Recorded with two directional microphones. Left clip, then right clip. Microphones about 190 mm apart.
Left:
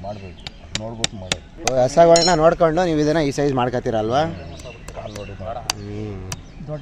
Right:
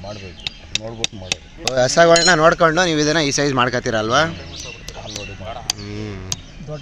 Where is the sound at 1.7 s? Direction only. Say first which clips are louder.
Even; 5° left (ahead or behind).